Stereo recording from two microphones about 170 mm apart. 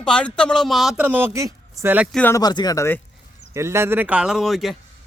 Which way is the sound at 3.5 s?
15° right (ahead or behind).